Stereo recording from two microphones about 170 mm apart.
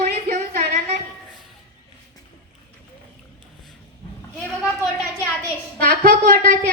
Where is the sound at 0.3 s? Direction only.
45° right (ahead or behind).